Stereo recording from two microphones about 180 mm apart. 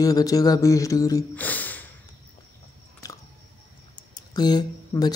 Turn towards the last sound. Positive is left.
turn(degrees=20)  # may be behind; listen again after turning